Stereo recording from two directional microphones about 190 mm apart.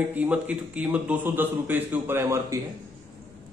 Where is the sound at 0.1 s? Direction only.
10° right (ahead or behind).